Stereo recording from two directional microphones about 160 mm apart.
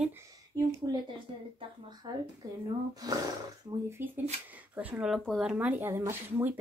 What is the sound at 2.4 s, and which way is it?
Speech, 25° right (ahead or behind).